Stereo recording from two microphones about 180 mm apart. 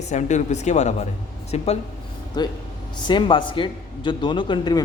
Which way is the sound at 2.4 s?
20° left (ahead or behind).